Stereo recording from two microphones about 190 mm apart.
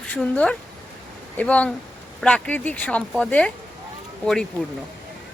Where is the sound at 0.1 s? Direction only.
5° left (ahead or behind).